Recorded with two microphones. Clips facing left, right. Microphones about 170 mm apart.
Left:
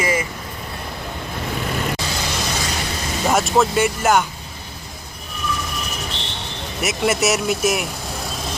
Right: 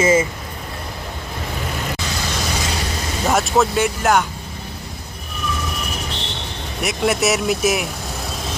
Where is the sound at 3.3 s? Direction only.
Centre (ahead or behind).